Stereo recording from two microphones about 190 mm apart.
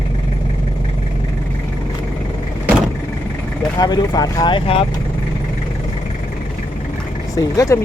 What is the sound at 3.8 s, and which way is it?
Speech, 20° left (ahead or behind).